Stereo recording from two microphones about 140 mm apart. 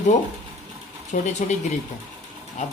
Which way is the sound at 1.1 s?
60° left (ahead or behind).